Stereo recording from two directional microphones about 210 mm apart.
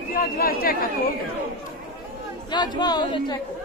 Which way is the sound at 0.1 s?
45° left (ahead or behind).